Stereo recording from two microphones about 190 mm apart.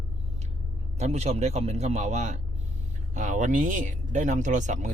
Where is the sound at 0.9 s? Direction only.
35° right (ahead or behind).